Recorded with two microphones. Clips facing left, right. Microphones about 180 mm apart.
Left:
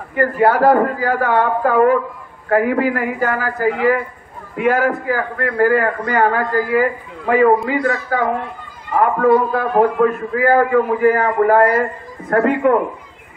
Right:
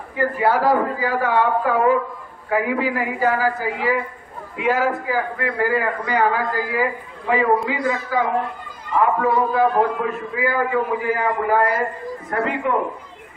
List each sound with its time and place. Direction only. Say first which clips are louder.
0.1 s a man's voice: left 4 dB; 55° left (ahead or behind)